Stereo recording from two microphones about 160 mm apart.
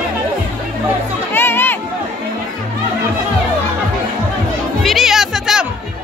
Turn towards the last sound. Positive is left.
turn(degrees=-5)  # may be behind; listen again after turning